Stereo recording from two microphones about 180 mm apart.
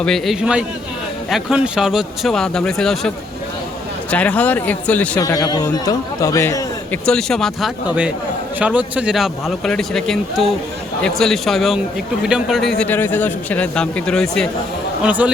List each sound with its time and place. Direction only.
0.0 s speech: centre (ahead or behind)
4.1 s speech: 10° left (ahead or behind)
5.2 s a man's voice: 20° left (ahead or behind)
7.0 s speech: 5° left (ahead or behind)
8.5 s speech: 10° right (ahead or behind)
12.8 s speech: 10° left (ahead or behind)
15.0 s speech: 10° right (ahead or behind)